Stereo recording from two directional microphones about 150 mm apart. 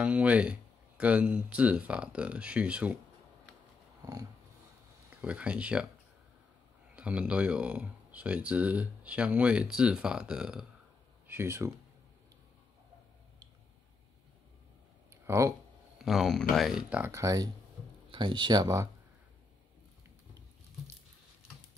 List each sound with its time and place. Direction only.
0.0 s speech: 10° right (ahead or behind)
4.0 s dog: 25° right (ahead or behind)
5.1 s speech: 10° right (ahead or behind)
7.0 s speech: 5° right (ahead or behind)
11.2 s speech: 15° right (ahead or behind)
15.2 s speech: 15° right (ahead or behind)
16.0 s speech: centre (ahead or behind); by 18.9 s 25° right (ahead or behind)